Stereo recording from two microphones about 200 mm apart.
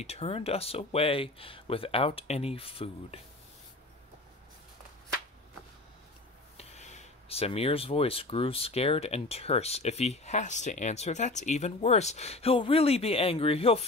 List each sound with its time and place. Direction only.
0.0 s speech: 30° left (ahead or behind)
6.5 s speech: 30° left (ahead or behind)